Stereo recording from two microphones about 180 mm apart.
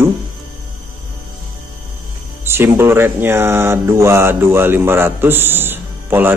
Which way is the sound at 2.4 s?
15° right (ahead or behind).